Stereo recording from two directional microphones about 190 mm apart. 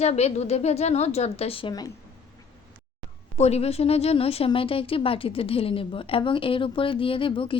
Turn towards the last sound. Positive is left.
turn(degrees=30)  # may be behind; listen again after turning